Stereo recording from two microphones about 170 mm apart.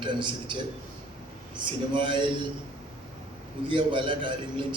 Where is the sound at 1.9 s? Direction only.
30° right (ahead or behind).